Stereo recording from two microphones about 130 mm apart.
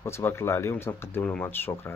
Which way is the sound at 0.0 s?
20° left (ahead or behind).